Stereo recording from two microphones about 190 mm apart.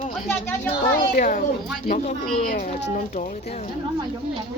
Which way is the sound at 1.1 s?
45° left (ahead or behind).